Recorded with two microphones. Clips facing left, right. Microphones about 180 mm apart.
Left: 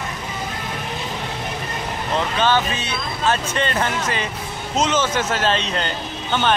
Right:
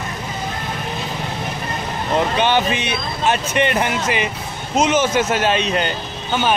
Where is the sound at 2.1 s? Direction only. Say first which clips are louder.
Right 2 dB; 20° right (ahead or behind).